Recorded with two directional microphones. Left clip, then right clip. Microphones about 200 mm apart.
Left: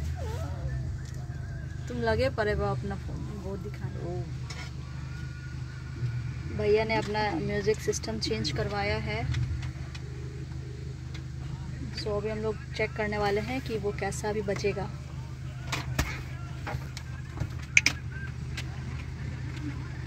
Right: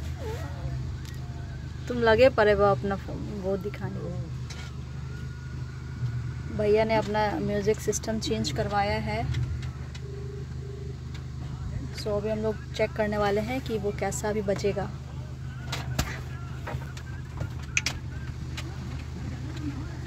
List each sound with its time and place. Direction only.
1.9 s speech: 25° right (ahead or behind)
6.6 s speech: 10° right (ahead or behind)
12.0 s speech: 10° right (ahead or behind)